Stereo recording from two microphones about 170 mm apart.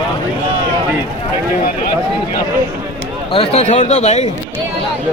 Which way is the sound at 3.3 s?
35° left (ahead or behind).